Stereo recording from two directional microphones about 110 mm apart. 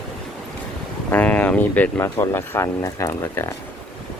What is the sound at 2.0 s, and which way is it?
Speech, 20° left (ahead or behind).